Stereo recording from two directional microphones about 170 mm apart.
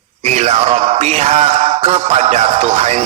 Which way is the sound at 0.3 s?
40° right (ahead or behind).